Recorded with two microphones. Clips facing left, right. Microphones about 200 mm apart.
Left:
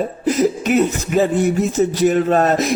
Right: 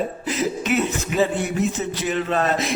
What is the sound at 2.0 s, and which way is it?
Music, 45° left (ahead or behind).